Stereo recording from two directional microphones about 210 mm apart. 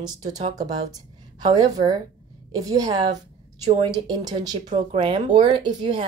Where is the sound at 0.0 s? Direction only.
20° right (ahead or behind).